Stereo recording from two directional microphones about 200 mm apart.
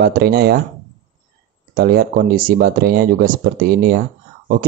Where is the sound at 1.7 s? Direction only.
45° right (ahead or behind).